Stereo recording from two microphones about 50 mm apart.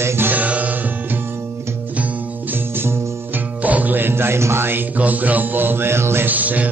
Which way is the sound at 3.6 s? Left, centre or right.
Right.